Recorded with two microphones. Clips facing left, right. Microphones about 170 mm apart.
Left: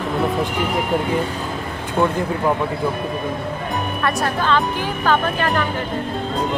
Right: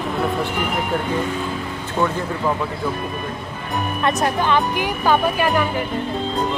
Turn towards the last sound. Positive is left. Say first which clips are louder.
# right 1 dB
turn(degrees=-10)  # may be behind; listen again after turning